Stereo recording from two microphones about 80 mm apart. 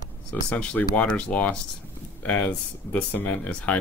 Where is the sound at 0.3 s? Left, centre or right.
Centre.